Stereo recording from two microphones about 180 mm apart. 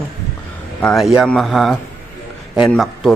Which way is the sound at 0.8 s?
Centre (ahead or behind).